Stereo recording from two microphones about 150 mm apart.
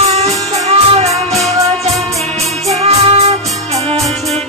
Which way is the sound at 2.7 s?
40° right (ahead or behind).